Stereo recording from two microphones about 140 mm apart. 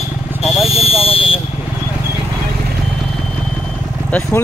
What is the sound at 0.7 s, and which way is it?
Speech, 45° left (ahead or behind).